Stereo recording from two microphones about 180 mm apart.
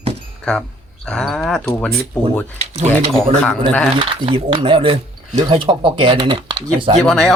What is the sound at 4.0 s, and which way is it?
Speech, 30° right (ahead or behind).